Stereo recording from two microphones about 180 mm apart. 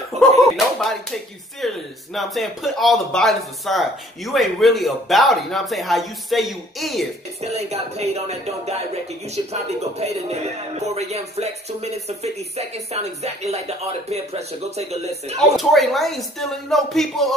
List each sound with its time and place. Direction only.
0.2 s slap: centre (ahead or behind)
1.6 s a sound: centre (ahead or behind)
2.1 s speech: centre (ahead or behind)
7.3 s speech: 35° right (ahead or behind)
15.3 s speech: centre (ahead or behind)